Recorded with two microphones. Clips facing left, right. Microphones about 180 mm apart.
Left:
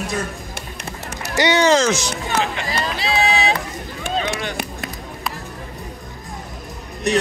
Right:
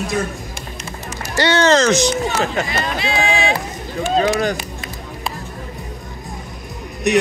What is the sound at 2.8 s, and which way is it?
Run, 35° left (ahead or behind).